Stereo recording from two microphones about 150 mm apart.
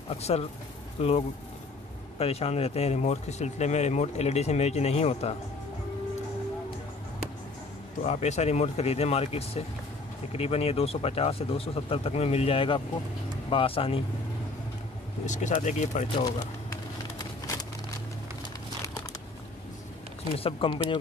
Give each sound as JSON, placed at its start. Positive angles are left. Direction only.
{"t": 0.1, "sound": "speech", "side_deg": 45}
{"t": 8.0, "sound": "speech", "side_deg": 50}
{"t": 15.2, "sound": "speech", "side_deg": 55}
{"t": 20.3, "sound": "speech", "side_deg": 40}